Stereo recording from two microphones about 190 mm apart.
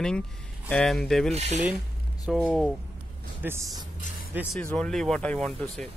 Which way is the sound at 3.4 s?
15° right (ahead or behind).